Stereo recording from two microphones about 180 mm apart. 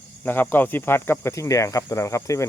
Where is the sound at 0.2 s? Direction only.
10° left (ahead or behind).